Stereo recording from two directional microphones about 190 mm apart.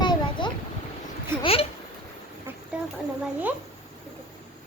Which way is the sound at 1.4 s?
30° left (ahead or behind).